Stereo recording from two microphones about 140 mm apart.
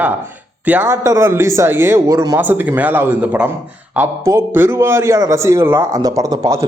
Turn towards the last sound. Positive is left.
turn(degrees=-25)  # may be behind; listen again after turning